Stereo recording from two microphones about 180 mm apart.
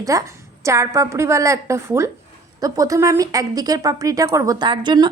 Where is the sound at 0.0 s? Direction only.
20° right (ahead or behind).